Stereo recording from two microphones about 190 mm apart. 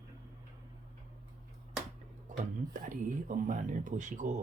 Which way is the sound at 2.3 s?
45° right (ahead or behind).